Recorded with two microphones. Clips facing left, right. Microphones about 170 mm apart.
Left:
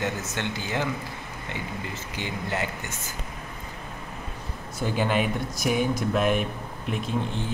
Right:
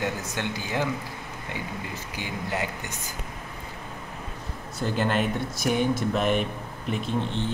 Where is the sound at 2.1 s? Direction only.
10° right (ahead or behind).